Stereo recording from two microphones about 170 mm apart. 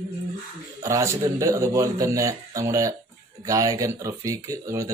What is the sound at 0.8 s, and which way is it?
Speech, 20° right (ahead or behind).